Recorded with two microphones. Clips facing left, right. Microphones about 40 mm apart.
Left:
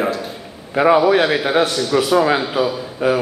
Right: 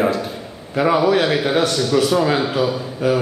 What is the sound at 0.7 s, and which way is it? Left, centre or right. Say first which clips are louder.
A man's voice: left 3 dB; centre.